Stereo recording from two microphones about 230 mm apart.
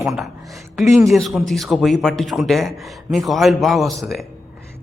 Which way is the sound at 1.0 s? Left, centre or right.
Centre.